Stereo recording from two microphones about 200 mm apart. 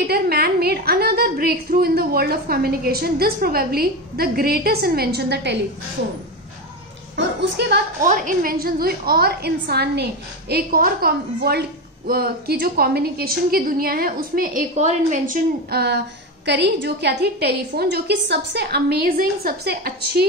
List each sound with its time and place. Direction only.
0.1 s a woman's voice: 50° right (ahead or behind)
7.2 s a woman's voice: 55° right (ahead or behind)
8.1 s a woman's voice: 40° right (ahead or behind)